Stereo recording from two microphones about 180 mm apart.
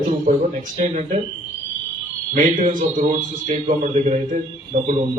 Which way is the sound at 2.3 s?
45° right (ahead or behind).